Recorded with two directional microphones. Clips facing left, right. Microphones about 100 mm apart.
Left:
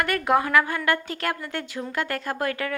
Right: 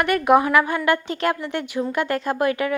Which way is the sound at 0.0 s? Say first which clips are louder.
Right 5 dB; 20° right (ahead or behind).